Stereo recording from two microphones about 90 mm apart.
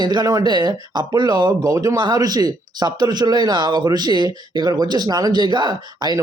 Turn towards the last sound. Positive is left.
turn(degrees=-55)  # may be behind; listen again after turning